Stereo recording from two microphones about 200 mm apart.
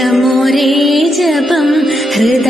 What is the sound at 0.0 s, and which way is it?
Music, centre (ahead or behind).